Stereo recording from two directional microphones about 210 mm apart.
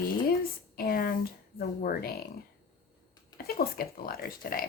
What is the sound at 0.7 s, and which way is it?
Speech, 45° left (ahead or behind).